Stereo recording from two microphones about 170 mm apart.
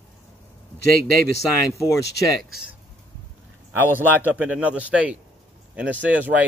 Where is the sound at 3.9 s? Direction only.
10° right (ahead or behind).